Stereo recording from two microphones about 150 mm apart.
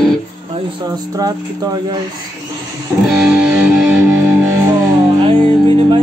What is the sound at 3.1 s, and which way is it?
Music, 5° right (ahead or behind).